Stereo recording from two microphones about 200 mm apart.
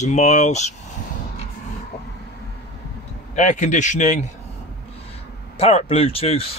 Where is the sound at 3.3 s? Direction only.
35° left (ahead or behind).